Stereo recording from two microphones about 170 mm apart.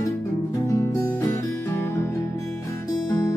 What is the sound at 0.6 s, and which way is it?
Music, 20° left (ahead or behind).